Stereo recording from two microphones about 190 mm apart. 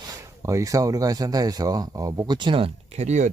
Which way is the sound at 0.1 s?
15° right (ahead or behind).